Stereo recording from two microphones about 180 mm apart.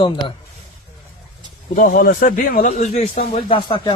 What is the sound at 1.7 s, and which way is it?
Speech, 50° left (ahead or behind).